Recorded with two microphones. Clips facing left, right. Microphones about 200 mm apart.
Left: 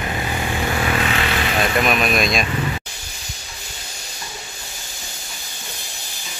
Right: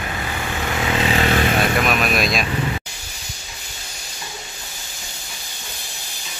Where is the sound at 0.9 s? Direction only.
30° right (ahead or behind).